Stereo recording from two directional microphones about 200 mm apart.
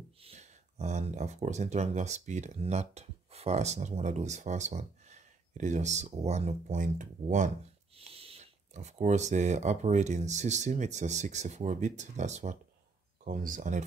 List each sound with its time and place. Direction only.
0.2 s speech: 30° right (ahead or behind)